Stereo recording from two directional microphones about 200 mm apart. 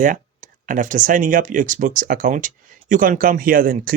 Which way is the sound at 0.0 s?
40° right (ahead or behind).